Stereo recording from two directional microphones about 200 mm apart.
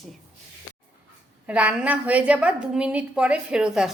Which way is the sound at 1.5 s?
5° right (ahead or behind).